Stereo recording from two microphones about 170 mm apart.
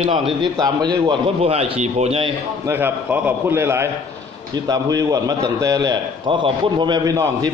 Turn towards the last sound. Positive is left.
turn(degrees=-20)  # may be behind; listen again after turning